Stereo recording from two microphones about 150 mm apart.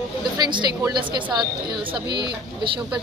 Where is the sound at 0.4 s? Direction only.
25° right (ahead or behind).